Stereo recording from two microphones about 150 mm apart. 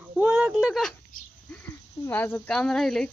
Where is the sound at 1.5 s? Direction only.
15° left (ahead or behind).